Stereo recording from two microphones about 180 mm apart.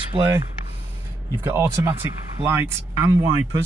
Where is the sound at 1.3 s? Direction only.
15° right (ahead or behind).